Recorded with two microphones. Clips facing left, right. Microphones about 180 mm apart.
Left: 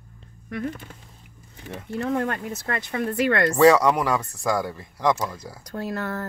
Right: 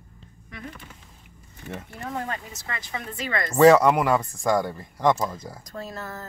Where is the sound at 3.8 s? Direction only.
5° right (ahead or behind).